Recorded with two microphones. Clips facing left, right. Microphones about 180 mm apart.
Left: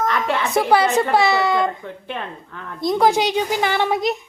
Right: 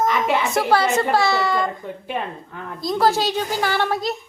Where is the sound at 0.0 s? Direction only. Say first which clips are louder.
Right 1 dB; 5° right (ahead or behind).